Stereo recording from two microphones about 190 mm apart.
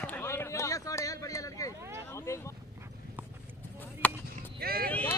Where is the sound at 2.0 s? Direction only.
15° left (ahead or behind).